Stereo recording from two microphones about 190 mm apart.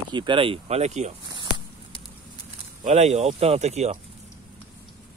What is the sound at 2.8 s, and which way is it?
Speech, 35° right (ahead or behind).